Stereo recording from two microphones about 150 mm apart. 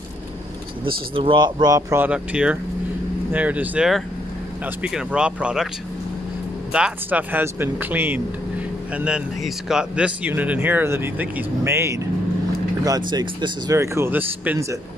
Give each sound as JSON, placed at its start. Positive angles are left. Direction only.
{"t": 1.1, "sound": "speech", "side_deg": -35}
{"t": 6.7, "sound": "speech", "side_deg": -10}
{"t": 13.7, "sound": "speech", "side_deg": -15}